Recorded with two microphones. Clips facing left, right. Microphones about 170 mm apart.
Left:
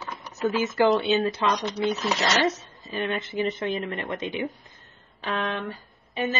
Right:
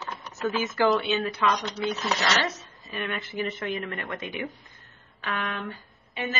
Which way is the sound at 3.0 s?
20° left (ahead or behind).